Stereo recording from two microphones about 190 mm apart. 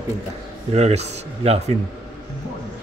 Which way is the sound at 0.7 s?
35° right (ahead or behind).